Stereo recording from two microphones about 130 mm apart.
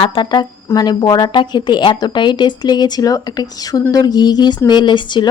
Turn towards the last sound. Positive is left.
turn(degrees=35)  # may be behind; listen again after turning